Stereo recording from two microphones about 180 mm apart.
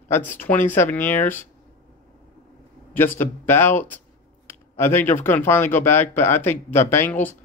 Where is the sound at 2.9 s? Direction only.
10° left (ahead or behind).